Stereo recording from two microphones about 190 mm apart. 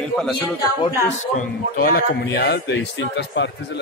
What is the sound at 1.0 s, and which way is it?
A man's voice, 45° left (ahead or behind).